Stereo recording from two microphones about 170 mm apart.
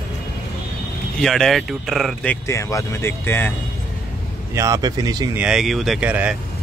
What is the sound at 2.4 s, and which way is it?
Speech, 15° left (ahead or behind).